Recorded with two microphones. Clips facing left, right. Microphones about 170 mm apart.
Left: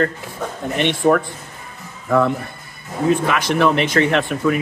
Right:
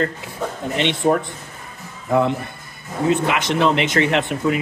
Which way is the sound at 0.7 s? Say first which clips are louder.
Left 2 dB; 20° right (ahead or behind).